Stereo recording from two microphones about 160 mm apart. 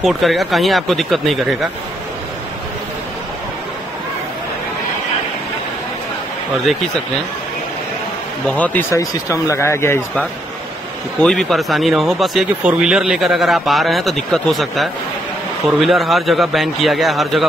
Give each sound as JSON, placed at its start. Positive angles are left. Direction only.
{"t": 0.0, "sound": "speech", "side_deg": 0}
{"t": 8.5, "sound": "speech", "side_deg": 10}
{"t": 11.1, "sound": "speech", "side_deg": 0}